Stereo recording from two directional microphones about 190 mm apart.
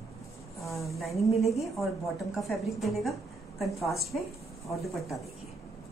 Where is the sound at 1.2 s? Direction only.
Centre (ahead or behind).